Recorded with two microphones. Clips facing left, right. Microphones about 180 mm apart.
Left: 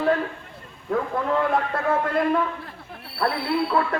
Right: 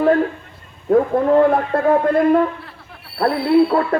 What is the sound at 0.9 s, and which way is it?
A man's voice, 40° right (ahead or behind).